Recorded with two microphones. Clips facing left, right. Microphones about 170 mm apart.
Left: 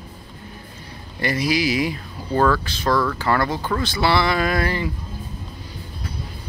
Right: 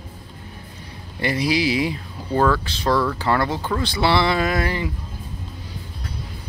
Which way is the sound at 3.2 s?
25° right (ahead or behind).